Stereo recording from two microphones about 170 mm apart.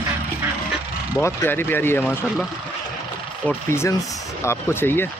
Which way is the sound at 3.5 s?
15° left (ahead or behind).